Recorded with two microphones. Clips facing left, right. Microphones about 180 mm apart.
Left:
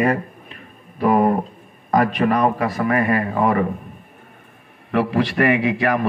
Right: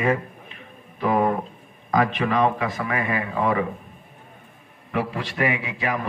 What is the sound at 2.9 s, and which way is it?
Speech, 55° left (ahead or behind).